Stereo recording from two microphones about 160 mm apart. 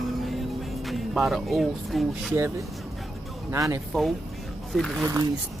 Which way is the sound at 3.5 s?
20° right (ahead or behind).